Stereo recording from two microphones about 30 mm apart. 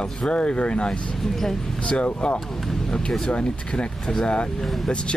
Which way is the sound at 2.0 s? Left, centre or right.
Left.